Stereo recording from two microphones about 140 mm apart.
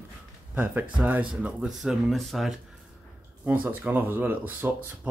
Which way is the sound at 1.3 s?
10° right (ahead or behind).